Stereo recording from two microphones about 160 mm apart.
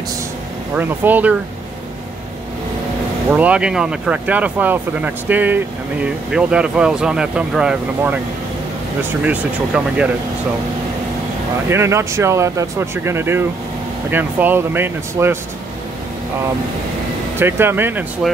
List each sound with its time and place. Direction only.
0.7 s speech: 10° right (ahead or behind)
3.3 s speech: 10° right (ahead or behind)
11.7 s speech: 15° right (ahead or behind)
17.4 s speech: 15° right (ahead or behind)